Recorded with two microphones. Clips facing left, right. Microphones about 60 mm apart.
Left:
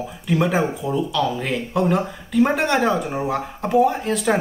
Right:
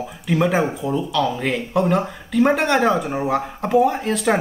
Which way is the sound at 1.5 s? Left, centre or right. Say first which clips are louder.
Even; centre.